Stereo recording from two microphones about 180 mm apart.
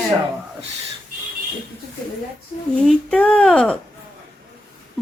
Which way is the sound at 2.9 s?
5° left (ahead or behind).